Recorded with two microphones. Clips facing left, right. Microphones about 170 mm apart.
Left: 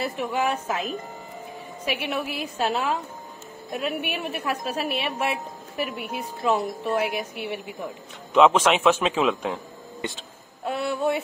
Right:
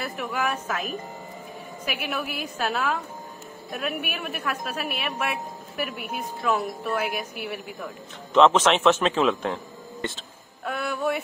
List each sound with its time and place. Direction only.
0.0 s a woman's voice: 25° left (ahead or behind)
1.9 s a woman's voice: 25° left (ahead or behind)
8.3 s a man's voice: 10° left (ahead or behind)
10.6 s a woman's voice: 25° left (ahead or behind)